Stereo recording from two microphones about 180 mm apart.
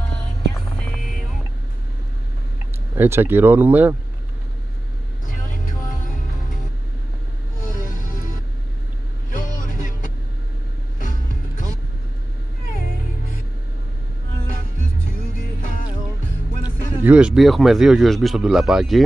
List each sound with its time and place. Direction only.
3.0 s speech: 10° right (ahead or behind)
9.8 s vehicle: 45° left (ahead or behind)
17.0 s speech: 5° right (ahead or behind)